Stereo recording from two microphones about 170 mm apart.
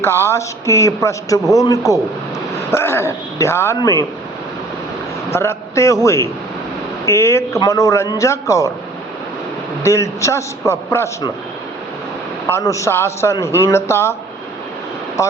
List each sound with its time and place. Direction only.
0.0 s a man's voice: 15° left (ahead or behind)
5.3 s a man's voice: 15° left (ahead or behind)
9.8 s a man's voice: 15° left (ahead or behind)
12.5 s a man's voice: 15° left (ahead or behind)
15.2 s speech: 15° left (ahead or behind)